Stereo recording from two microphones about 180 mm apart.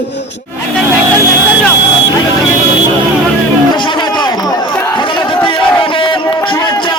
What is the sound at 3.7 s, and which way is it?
Chatter, 25° left (ahead or behind).